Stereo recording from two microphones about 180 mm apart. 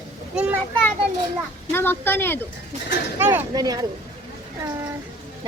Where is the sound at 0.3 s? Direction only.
5° right (ahead or behind).